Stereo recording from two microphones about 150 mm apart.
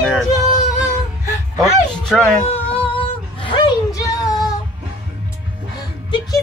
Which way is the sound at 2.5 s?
10° left (ahead or behind).